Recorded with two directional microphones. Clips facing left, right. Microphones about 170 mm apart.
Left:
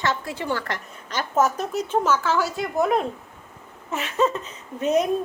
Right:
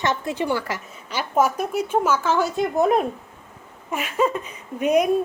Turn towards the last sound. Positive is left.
turn(degrees=-10)  # may be behind; listen again after turning